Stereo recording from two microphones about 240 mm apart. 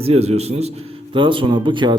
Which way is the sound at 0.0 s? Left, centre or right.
Right.